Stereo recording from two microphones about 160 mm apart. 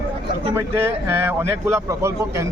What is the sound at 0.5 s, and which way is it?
A man's voice, 15° right (ahead or behind).